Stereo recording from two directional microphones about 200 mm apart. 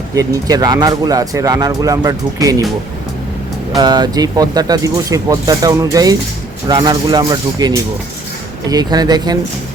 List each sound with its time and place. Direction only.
0.1 s speech: 15° right (ahead or behind)
3.8 s speech: 20° right (ahead or behind)